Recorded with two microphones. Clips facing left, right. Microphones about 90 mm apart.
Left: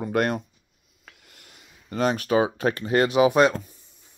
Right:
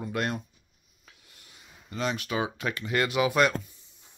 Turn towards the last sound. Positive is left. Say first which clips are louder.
# left 6 dB
turn(degrees=30)  # may be behind; listen again after turning